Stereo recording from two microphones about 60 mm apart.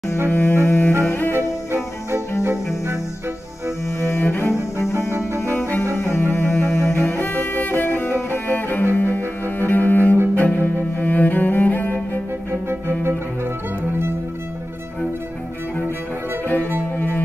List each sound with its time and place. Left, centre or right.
0.3 s music: left
0.7 s double bass: left
1.0 s cello: left
1.3 s music: right
4.0 s cello: left
5.6 s music: left
5.9 s music: left
9.6 s cello: left
12.4 s music: right